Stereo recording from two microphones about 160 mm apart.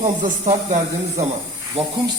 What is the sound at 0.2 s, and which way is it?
Speech, 55° right (ahead or behind).